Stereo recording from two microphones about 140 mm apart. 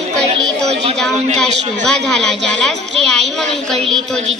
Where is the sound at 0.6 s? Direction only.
50° right (ahead or behind).